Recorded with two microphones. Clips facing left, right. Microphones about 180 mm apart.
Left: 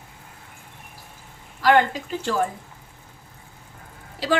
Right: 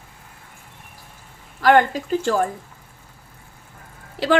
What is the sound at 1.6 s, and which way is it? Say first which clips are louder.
Speech: right 3 dB; 50° right (ahead or behind).